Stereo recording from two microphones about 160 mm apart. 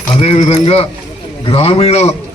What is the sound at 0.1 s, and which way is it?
A man's voice, 40° left (ahead or behind).